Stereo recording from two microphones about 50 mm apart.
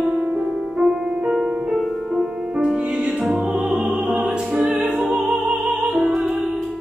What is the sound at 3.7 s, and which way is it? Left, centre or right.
Music, centre.